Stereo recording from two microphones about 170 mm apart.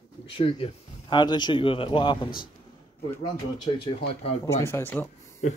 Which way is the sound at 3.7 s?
35° left (ahead or behind).